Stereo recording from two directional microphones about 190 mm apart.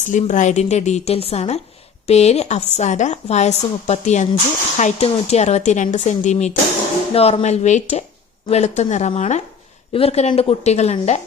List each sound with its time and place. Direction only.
0.0 s a woman's voice: 40° left (ahead or behind)